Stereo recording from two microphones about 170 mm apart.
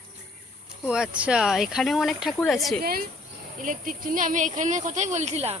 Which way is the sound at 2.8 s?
60° right (ahead or behind).